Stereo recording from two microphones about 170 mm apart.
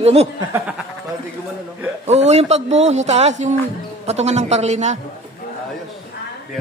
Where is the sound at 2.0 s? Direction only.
40° right (ahead or behind).